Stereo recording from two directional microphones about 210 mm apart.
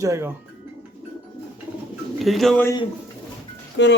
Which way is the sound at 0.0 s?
15° right (ahead or behind).